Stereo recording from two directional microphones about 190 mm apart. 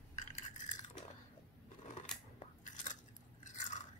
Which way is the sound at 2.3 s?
45° left (ahead or behind).